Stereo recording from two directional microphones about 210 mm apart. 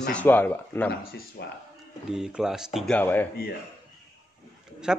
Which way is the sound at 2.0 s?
5° right (ahead or behind).